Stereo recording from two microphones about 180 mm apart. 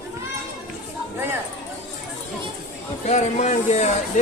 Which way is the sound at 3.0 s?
40° left (ahead or behind).